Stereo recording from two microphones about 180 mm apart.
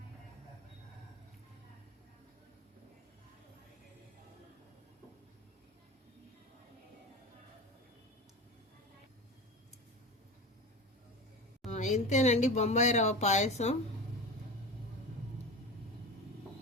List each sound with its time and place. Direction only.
11.7 s speech: 40° left (ahead or behind)